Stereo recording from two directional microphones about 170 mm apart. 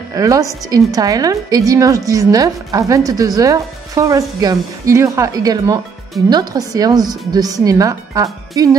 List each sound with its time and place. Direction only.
0.1 s a woman's voice: 20° right (ahead or behind)